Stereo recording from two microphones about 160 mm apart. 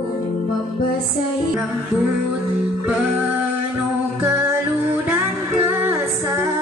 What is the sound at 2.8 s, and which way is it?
Music, 10° right (ahead or behind).